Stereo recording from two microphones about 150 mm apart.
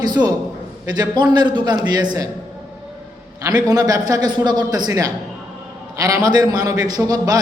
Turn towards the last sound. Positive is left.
turn(degrees=-25)  # may be behind; listen again after turning